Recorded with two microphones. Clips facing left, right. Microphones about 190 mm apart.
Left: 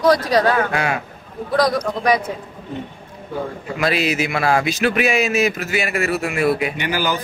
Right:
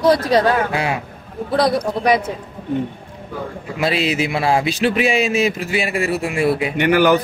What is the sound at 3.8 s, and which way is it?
Speech, 25° right (ahead or behind).